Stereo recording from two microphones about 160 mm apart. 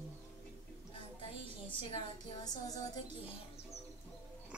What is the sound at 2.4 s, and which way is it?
Music, 25° left (ahead or behind).